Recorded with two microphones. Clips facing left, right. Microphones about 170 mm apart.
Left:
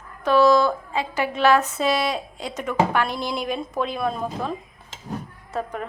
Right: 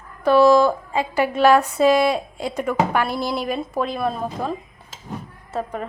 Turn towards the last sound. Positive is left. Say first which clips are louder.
# right 2 dB
turn(degrees=-5)  # may be behind; listen again after turning